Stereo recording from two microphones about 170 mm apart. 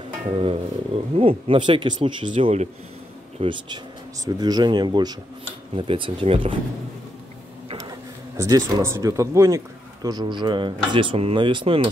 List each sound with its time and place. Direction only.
0.4 s speech: 35° right (ahead or behind)
7.7 s speech: 20° right (ahead or behind)